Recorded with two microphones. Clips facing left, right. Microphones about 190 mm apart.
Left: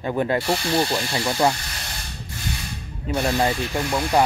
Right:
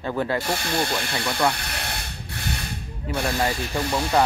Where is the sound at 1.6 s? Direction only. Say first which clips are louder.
Right 4 dB; 60° right (ahead or behind).